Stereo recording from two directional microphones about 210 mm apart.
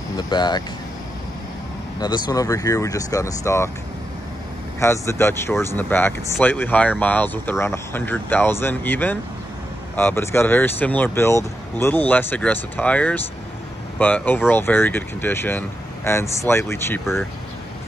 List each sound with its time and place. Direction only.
0.3 s speech: 20° left (ahead or behind)
2.0 s speech: 20° left (ahead or behind)
4.7 s speech: 15° left (ahead or behind)